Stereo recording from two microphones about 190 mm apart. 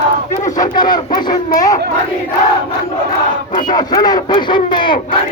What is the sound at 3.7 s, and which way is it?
Speech, 20° left (ahead or behind).